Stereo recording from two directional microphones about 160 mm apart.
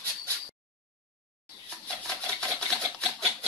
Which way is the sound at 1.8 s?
5° left (ahead or behind).